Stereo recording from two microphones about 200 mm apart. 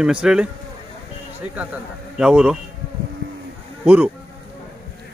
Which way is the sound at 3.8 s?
5° right (ahead or behind).